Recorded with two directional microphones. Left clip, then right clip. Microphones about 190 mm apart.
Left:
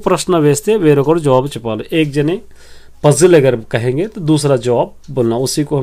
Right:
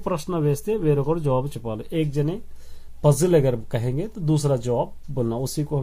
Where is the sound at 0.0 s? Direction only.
35° left (ahead or behind).